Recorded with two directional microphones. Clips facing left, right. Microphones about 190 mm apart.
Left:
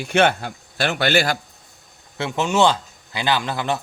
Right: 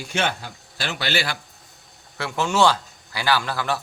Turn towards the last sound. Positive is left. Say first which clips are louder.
# left 1 dB
turn(degrees=20)  # may be behind; listen again after turning